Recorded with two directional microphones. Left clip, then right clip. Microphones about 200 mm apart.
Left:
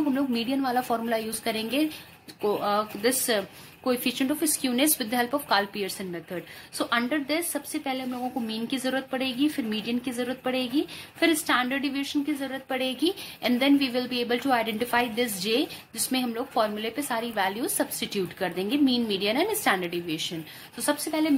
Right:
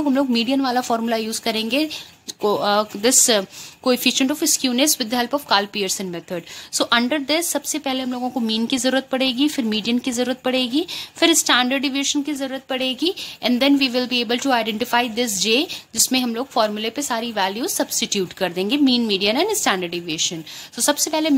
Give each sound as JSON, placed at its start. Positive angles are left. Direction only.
{"t": 0.1, "sound": "a woman's voice", "side_deg": -35}